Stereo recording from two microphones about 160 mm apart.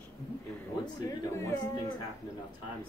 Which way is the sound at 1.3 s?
20° left (ahead or behind).